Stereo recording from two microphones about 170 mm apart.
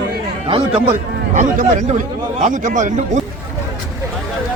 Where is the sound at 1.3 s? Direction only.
50° right (ahead or behind).